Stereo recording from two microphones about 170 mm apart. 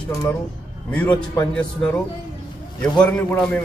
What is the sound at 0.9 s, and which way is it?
A man's voice, 10° left (ahead or behind).